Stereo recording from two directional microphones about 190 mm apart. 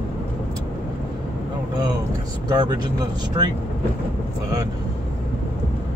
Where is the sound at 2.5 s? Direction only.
20° right (ahead or behind).